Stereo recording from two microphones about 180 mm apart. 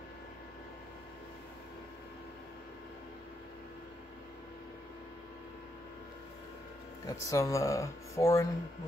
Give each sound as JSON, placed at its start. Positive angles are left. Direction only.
{"t": 7.1, "sound": "speech", "side_deg": 20}